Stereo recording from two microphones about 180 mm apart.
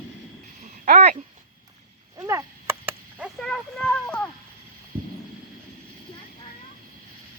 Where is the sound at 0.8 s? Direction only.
40° right (ahead or behind).